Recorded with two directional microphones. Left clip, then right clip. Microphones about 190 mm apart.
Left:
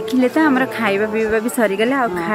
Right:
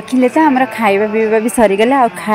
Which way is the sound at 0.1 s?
15° right (ahead or behind).